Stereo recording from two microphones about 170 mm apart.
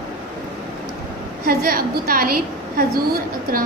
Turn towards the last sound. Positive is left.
turn(degrees=-60)  # may be behind; listen again after turning